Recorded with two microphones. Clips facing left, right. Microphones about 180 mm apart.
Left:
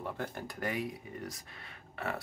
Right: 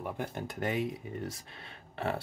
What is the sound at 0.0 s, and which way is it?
Speech, 15° right (ahead or behind).